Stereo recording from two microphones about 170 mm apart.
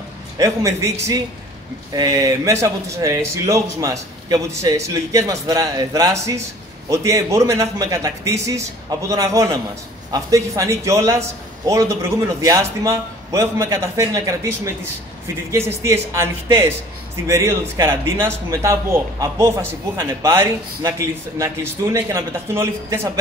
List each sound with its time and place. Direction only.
0.4 s a man's voice: 20° right (ahead or behind)
2.0 s a man's voice: 20° right (ahead or behind)